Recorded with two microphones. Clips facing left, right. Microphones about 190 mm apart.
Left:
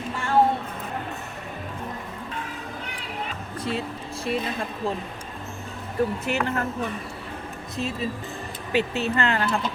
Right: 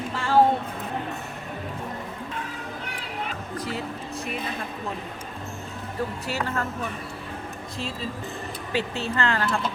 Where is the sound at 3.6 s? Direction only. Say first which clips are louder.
Left 5 dB; 25° left (ahead or behind).